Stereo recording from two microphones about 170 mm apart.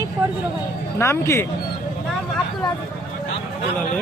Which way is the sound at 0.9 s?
15° left (ahead or behind).